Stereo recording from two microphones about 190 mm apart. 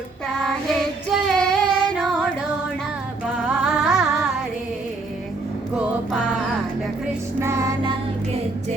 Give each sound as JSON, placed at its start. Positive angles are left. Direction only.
{"t": 1.1, "sound": "child singing", "side_deg": 0}
{"t": 3.3, "sound": "a sound", "side_deg": -5}
{"t": 5.7, "sound": "music", "side_deg": 0}
{"t": 7.3, "sound": "music", "side_deg": -15}